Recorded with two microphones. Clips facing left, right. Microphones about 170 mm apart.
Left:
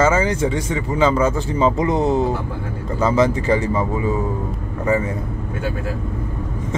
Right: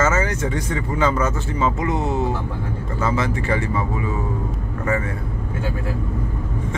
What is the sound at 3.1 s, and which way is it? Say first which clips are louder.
Speech: left 7 dB; 20° left (ahead or behind).